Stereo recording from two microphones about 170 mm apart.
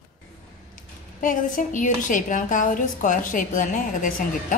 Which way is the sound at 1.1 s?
50° left (ahead or behind).